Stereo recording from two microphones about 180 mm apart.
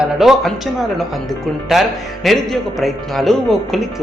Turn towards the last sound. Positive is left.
turn(degrees=0)  # may be behind; listen again after turning